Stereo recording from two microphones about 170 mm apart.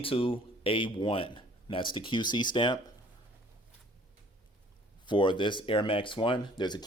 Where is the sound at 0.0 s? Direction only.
30° left (ahead or behind).